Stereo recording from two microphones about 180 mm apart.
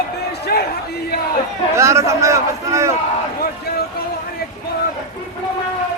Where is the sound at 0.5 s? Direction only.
55° left (ahead or behind).